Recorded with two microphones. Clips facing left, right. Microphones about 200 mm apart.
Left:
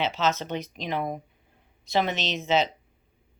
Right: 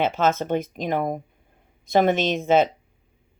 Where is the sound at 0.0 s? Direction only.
50° right (ahead or behind).